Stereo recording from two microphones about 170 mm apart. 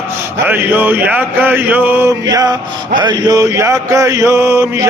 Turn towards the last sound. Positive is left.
turn(degrees=-15)  # may be behind; listen again after turning